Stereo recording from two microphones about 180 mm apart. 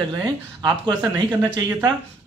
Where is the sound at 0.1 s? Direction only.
20° right (ahead or behind).